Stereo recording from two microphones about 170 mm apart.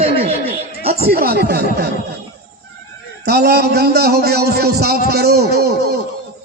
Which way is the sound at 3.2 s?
75° right (ahead or behind).